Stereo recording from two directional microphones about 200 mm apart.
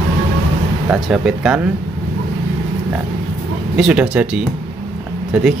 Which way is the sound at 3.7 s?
5° right (ahead or behind).